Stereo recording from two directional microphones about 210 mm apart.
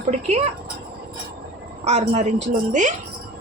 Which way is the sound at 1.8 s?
35° right (ahead or behind).